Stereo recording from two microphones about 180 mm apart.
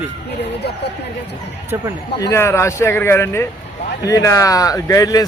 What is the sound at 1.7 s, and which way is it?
Speech, 15° right (ahead or behind).